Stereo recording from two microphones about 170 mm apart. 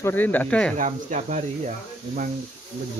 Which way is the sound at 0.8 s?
45° right (ahead or behind).